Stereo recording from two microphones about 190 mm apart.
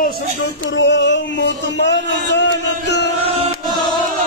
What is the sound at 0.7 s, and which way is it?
Speech, 70° left (ahead or behind).